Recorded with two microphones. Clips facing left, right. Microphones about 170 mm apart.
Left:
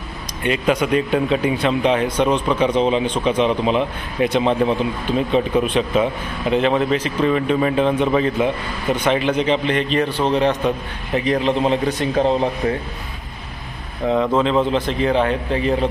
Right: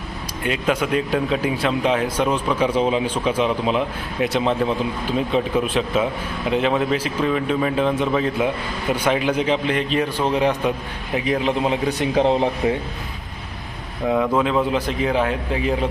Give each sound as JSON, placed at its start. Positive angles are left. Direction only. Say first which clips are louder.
{"t": 0.4, "sound": "a man's voice", "louder": "left 3 dB", "side_deg": 0}
{"t": 14.0, "sound": "a man's voice", "louder": "left 2 dB", "side_deg": -10}